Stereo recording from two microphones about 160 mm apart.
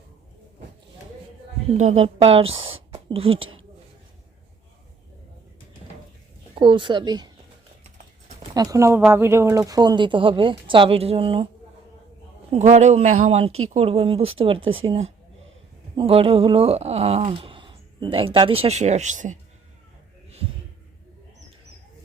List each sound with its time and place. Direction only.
1.8 s speech: 40° right (ahead or behind)
6.6 s speech: 30° right (ahead or behind)
8.5 s speech: 20° right (ahead or behind)
12.5 s speech: 45° right (ahead or behind)